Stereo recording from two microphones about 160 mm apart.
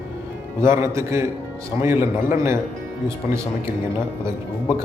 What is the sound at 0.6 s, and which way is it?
A man's voice, 15° right (ahead or behind).